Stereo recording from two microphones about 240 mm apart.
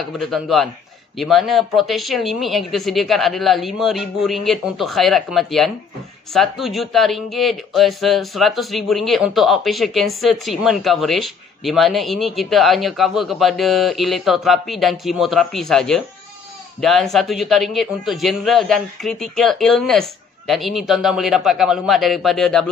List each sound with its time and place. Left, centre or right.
0.0 s speech: centre